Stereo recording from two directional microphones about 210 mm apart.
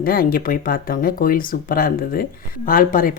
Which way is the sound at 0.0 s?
45° left (ahead or behind).